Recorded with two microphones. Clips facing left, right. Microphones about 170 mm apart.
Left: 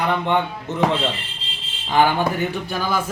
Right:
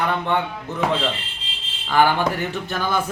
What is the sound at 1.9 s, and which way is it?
Speech, 20° left (ahead or behind).